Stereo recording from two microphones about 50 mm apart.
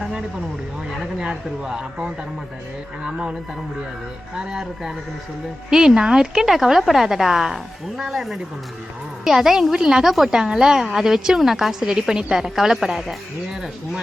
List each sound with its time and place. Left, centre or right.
0.9 s a woman's voice: centre
4.4 s a woman's voice: centre